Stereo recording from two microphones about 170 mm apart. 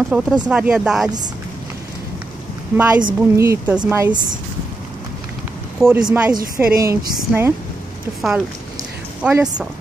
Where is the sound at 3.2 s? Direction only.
15° right (ahead or behind).